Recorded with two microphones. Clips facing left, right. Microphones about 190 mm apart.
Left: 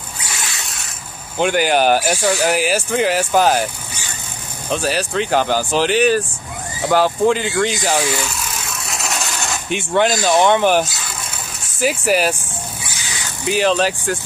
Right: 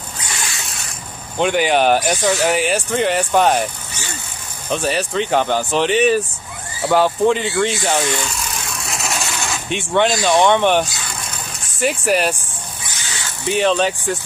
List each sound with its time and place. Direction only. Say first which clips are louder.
0.4 s a sound: right 1 dB; centre (ahead or behind)
1.4 s speech: even; centre (ahead or behind)
4.6 s speech: even; centre (ahead or behind)
13.5 s speech: even; centre (ahead or behind)